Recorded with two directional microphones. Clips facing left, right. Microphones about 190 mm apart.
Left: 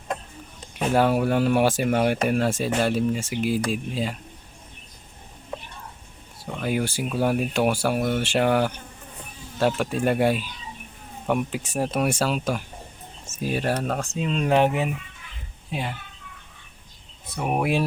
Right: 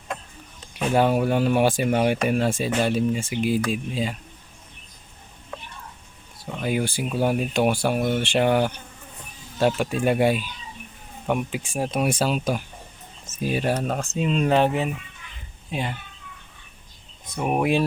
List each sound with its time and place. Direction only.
0.9 s speech: 5° left (ahead or behind)
6.6 s speech: centre (ahead or behind)
11.7 s speech: centre (ahead or behind)
14.5 s speech: 10° left (ahead or behind)
17.3 s speech: 5° left (ahead or behind)